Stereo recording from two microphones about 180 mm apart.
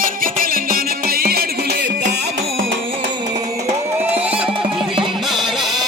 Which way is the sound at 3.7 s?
35° right (ahead or behind).